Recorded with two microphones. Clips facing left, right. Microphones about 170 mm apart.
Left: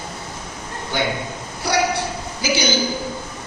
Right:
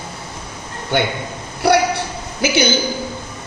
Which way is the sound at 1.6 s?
60° right (ahead or behind).